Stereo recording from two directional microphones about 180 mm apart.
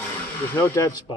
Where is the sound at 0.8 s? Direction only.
20° left (ahead or behind).